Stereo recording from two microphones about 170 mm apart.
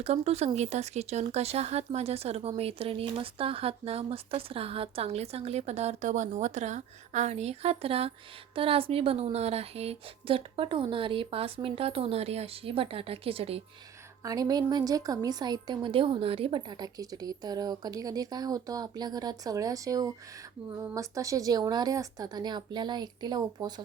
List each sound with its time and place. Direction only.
0.0 s speech: 35° right (ahead or behind)
14.3 s a woman's voice: 20° right (ahead or behind)